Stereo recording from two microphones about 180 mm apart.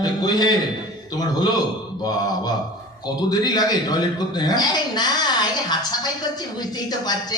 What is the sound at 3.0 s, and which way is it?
A man's voice, 20° left (ahead or behind).